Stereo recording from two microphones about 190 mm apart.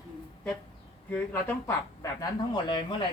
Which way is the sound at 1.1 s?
10° left (ahead or behind).